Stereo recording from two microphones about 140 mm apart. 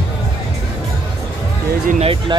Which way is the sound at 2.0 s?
40° right (ahead or behind).